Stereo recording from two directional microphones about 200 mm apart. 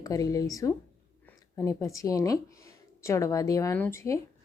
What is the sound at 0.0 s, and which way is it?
Speech, 15° left (ahead or behind).